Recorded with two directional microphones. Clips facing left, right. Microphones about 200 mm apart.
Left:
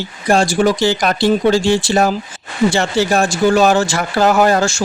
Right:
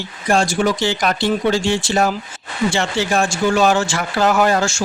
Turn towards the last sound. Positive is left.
turn(degrees=40)  # may be behind; listen again after turning